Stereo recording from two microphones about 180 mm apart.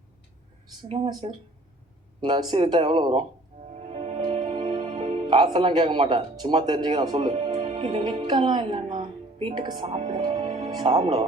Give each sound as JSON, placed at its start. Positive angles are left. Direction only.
{"t": 0.9, "sound": "speech", "side_deg": -30}
{"t": 3.7, "sound": "music", "side_deg": -35}
{"t": 10.7, "sound": "speech", "side_deg": -30}